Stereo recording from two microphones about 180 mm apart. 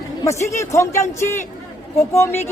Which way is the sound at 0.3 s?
15° left (ahead or behind).